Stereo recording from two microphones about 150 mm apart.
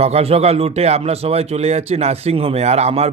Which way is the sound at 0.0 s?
45° right (ahead or behind).